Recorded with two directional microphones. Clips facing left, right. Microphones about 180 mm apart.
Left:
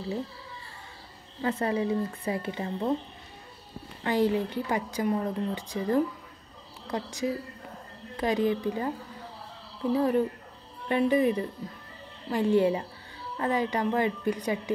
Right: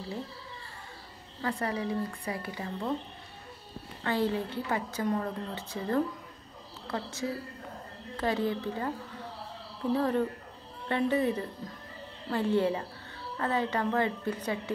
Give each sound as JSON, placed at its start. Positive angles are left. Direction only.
{"t": 1.4, "sound": "speech", "side_deg": 25}
{"t": 4.0, "sound": "a woman's voice", "side_deg": 15}
{"t": 9.9, "sound": "a woman's voice", "side_deg": 10}